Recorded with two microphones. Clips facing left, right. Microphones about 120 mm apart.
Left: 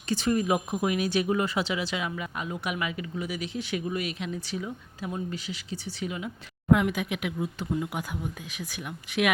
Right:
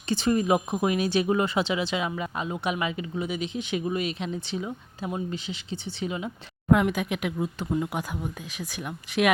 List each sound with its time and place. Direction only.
0.1 s speech: 25° right (ahead or behind)
6.7 s speech: 40° right (ahead or behind)